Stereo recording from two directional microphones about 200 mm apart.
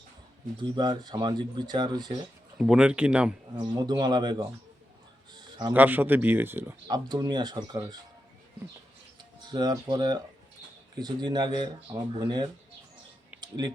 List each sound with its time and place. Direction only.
0.6 s speech: 20° right (ahead or behind)
2.6 s speech: 5° right (ahead or behind)
3.5 s speech: 20° right (ahead or behind)
5.3 s a sound: 20° right (ahead or behind)
5.7 s speech: 10° right (ahead or behind)
9.4 s speech: 20° right (ahead or behind)